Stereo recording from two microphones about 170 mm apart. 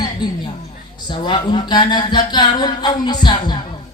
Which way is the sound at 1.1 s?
25° left (ahead or behind).